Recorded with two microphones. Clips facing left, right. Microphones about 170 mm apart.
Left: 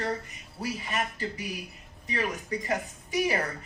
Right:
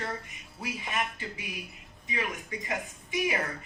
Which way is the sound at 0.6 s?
40° left (ahead or behind).